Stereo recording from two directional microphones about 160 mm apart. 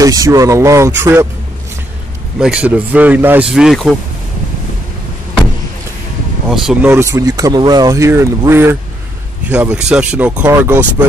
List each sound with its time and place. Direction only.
0.0 s speech: 20° right (ahead or behind)
2.3 s speech: 5° right (ahead or behind)
6.5 s speech: 5° right (ahead or behind)
6.9 s speech: 15° right (ahead or behind)